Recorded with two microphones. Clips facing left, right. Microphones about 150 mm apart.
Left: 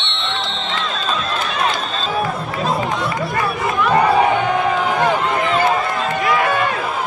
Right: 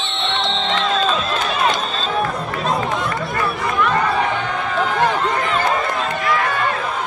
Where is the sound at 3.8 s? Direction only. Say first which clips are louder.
Left 6 dB; 10° left (ahead or behind).